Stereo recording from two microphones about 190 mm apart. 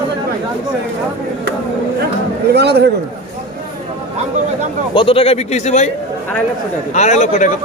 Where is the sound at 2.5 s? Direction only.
60° right (ahead or behind).